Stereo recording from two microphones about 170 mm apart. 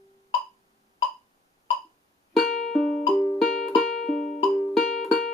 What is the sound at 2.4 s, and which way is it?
Music, centre (ahead or behind).